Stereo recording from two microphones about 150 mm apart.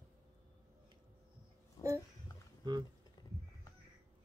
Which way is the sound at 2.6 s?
30° right (ahead or behind).